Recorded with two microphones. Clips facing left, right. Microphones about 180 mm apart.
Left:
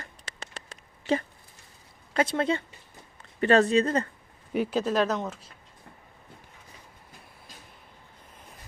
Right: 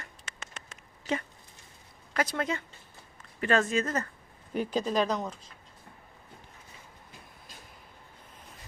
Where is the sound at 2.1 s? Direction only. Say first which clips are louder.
Left 5 dB; 25° left (ahead or behind).